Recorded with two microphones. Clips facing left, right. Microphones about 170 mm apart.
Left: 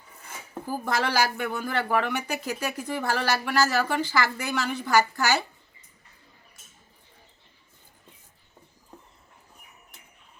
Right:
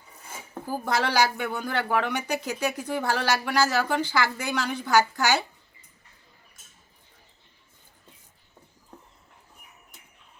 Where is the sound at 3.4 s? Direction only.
15° right (ahead or behind).